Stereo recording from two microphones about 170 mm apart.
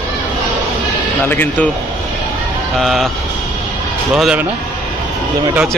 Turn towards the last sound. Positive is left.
turn(degrees=-5)  # may be behind; listen again after turning